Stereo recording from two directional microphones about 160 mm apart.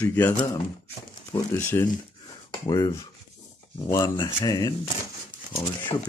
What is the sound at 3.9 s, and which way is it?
Speech, 20° left (ahead or behind).